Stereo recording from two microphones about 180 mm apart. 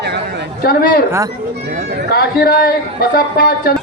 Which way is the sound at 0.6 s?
55° left (ahead or behind).